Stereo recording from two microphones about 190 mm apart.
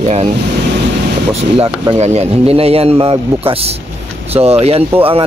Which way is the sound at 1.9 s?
35° right (ahead or behind).